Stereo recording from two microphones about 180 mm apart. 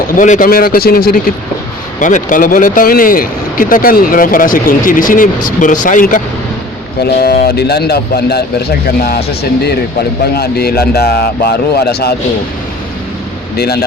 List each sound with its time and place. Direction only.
0.2 s speech: 50° left (ahead or behind)
7.0 s speech: 60° left (ahead or behind)